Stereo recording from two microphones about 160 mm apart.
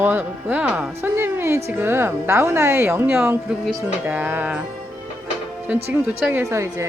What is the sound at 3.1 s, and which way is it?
Speech, 5° right (ahead or behind).